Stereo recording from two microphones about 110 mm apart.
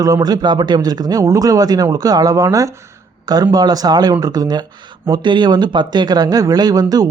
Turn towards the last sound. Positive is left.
turn(degrees=-35)  # may be behind; listen again after turning